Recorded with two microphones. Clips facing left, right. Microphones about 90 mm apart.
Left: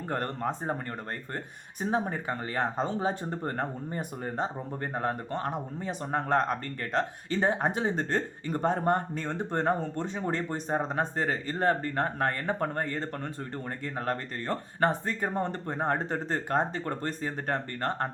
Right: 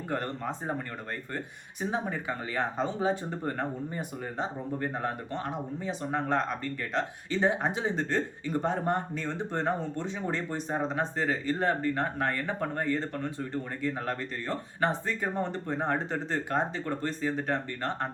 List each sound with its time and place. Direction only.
0.1 s speech: 40° left (ahead or behind)
1.8 s speech: 40° left (ahead or behind)